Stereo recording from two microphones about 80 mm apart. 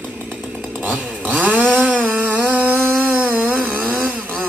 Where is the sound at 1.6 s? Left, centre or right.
Centre.